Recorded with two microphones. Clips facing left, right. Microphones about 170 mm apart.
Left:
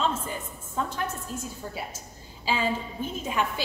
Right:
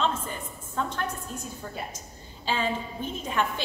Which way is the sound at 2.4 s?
10° left (ahead or behind).